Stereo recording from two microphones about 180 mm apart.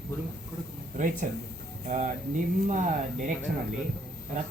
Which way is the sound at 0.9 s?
45° right (ahead or behind).